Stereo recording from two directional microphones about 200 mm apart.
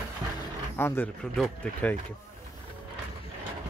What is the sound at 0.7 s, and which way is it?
Speech, 10° left (ahead or behind).